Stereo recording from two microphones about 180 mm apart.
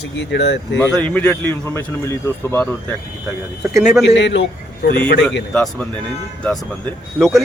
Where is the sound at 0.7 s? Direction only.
5° left (ahead or behind).